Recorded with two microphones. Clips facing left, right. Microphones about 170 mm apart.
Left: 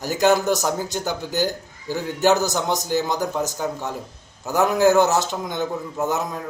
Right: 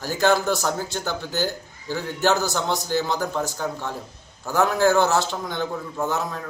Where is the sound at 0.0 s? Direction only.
15° left (ahead or behind).